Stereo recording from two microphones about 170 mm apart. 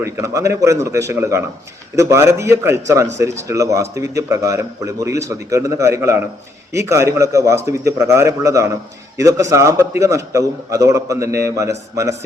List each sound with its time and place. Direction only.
0.0 s a man's voice: 15° right (ahead or behind)